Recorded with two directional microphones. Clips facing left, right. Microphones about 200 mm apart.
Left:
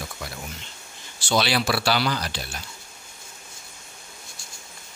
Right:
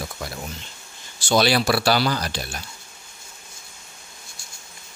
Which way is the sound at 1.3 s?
45° right (ahead or behind).